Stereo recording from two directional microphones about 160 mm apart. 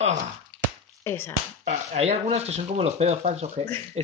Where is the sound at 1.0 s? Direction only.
15° left (ahead or behind).